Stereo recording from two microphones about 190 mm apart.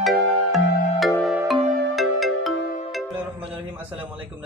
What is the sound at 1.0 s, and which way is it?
Music, centre (ahead or behind).